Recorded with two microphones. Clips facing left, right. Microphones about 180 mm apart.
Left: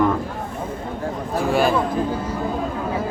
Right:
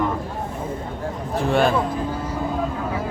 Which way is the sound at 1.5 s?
5° left (ahead or behind).